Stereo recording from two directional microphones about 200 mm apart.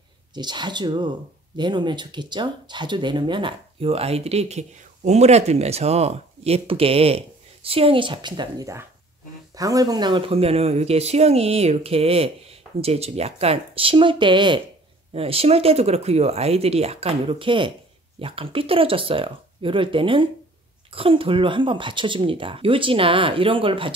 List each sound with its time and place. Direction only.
0.3 s speech: 20° right (ahead or behind)